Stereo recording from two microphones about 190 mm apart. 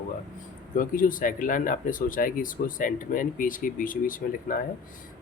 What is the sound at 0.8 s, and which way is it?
Speech, 45° left (ahead or behind).